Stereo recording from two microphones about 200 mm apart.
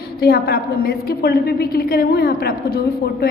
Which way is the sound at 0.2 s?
50° left (ahead or behind).